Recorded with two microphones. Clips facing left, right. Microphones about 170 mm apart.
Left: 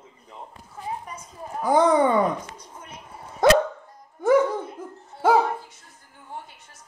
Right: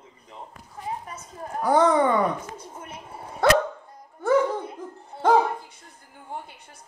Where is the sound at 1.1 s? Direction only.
10° left (ahead or behind).